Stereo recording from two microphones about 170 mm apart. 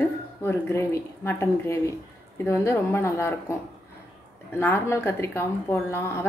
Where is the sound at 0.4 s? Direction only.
15° left (ahead or behind).